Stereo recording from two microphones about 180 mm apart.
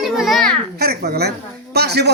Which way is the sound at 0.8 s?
65° right (ahead or behind).